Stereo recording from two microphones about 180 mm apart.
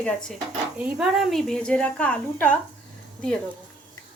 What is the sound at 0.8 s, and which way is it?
A woman's voice, 5° right (ahead or behind).